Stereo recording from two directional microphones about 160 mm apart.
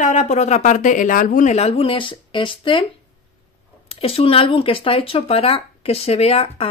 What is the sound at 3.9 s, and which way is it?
Speech, 35° left (ahead or behind).